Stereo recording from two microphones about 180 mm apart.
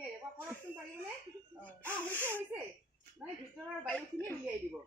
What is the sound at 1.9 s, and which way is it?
A woman's voice, 10° right (ahead or behind).